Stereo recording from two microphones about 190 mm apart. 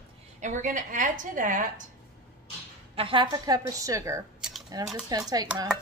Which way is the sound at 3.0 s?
25° right (ahead or behind).